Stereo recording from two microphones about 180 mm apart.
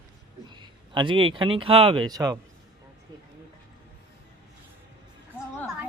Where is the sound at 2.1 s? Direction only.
20° right (ahead or behind).